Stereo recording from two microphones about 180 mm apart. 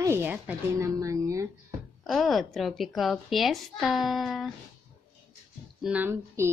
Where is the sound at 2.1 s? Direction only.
Centre (ahead or behind).